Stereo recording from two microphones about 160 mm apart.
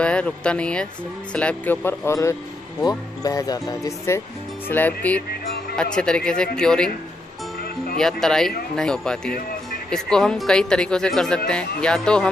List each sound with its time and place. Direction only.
0.0 s speech: 5° left (ahead or behind)
8.0 s speech: 5° left (ahead or behind)